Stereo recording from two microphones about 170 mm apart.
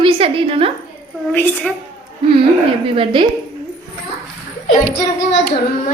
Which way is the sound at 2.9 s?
30° right (ahead or behind).